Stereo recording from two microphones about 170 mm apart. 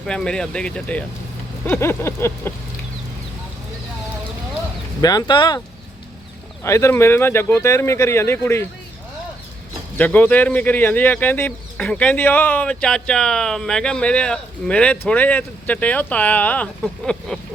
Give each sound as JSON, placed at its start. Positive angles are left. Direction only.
{"t": 0.0, "sound": "speech", "side_deg": 5}
{"t": 4.9, "sound": "speech", "side_deg": 20}
{"t": 10.0, "sound": "speech", "side_deg": 10}